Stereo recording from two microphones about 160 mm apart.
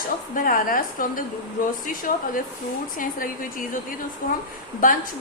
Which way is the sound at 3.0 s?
60° left (ahead or behind).